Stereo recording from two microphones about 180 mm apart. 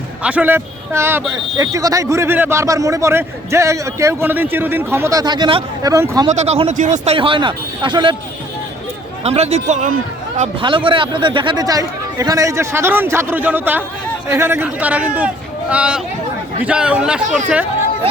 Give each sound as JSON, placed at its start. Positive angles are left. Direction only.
{"t": 0.2, "sound": "speech", "side_deg": -10}
{"t": 6.3, "sound": "speech", "side_deg": -35}
{"t": 9.2, "sound": "speech", "side_deg": -35}
{"t": 10.6, "sound": "speech", "side_deg": -30}